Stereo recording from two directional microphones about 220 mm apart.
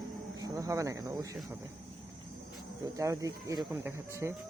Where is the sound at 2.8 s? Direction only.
15° right (ahead or behind).